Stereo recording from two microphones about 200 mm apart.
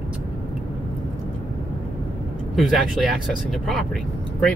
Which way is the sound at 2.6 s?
Centre (ahead or behind).